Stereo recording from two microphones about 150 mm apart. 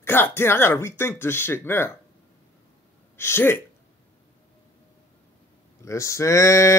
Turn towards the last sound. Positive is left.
turn(degrees=20)  # may be behind; listen again after turning